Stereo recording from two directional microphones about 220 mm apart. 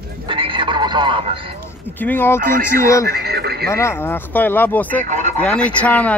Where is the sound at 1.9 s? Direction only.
10° left (ahead or behind).